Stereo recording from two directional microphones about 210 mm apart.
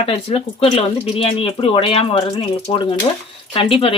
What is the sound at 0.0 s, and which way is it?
Speech, 30° left (ahead or behind).